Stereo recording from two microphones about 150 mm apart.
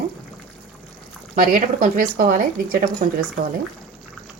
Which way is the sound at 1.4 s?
65° right (ahead or behind).